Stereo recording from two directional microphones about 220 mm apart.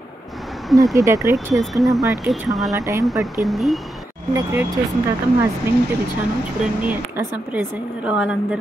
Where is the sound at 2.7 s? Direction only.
15° right (ahead or behind).